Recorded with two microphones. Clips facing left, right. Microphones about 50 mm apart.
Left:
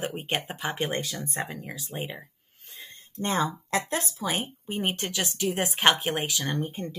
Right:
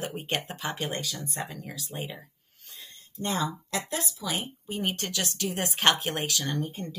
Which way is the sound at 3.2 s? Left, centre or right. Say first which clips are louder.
Left 3 dB; left.